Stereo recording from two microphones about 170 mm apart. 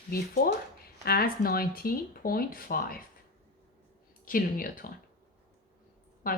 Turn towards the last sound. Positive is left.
turn(degrees=55)  # may be behind; listen again after turning